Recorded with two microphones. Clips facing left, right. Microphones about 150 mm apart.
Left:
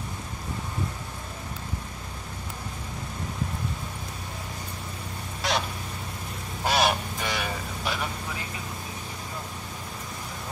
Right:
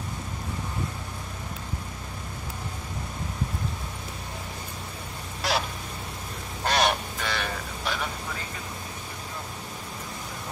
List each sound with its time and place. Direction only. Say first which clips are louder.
5.4 s a sound: even; centre (ahead or behind)
6.6 s goose: even; 5° left (ahead or behind)
7.2 s vehicle: even; 10° left (ahead or behind)